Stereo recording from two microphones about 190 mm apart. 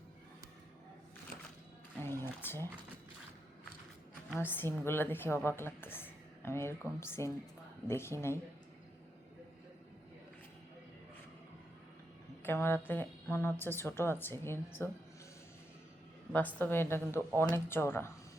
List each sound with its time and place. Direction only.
2.0 s a woman's voice: 10° left (ahead or behind)
4.4 s a woman's voice: 10° left (ahead or behind)
12.4 s a woman's voice: 10° left (ahead or behind)
16.3 s a woman's voice: 10° left (ahead or behind)